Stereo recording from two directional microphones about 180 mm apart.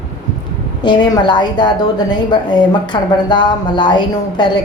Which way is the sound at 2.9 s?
25° left (ahead or behind).